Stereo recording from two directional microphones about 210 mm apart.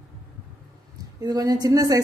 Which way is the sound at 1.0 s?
15° right (ahead or behind).